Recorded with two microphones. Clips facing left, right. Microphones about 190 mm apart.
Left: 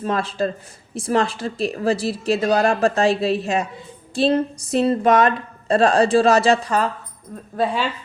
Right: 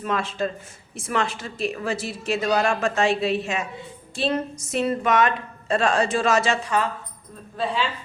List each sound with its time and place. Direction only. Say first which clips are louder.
0.0 s speech: left 4 dB; 35° left (ahead or behind)